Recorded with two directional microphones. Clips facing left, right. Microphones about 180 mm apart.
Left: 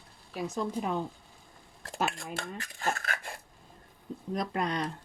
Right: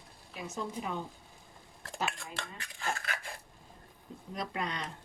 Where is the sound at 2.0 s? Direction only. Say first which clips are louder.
Left 5 dB; 45° left (ahead or behind).